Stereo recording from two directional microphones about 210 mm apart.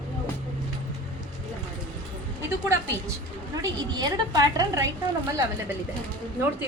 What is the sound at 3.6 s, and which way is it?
A woman's voice, 20° right (ahead or behind).